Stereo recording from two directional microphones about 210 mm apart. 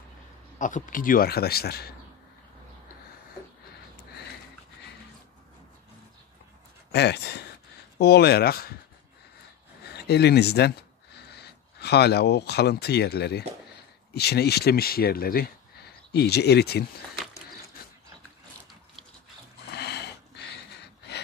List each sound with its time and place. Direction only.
0.6 s speech: 40° left (ahead or behind)
6.9 s speech: 50° left (ahead or behind)
9.8 s speech: 50° left (ahead or behind)
19.7 s a sound: 50° left (ahead or behind)